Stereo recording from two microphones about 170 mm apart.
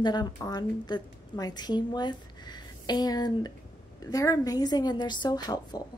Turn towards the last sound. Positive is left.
turn(degrees=25)  # may be behind; listen again after turning